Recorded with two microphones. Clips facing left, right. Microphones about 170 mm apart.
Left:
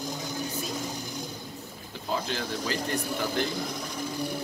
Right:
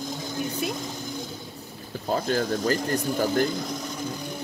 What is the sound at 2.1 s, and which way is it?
Speech, 45° right (ahead or behind).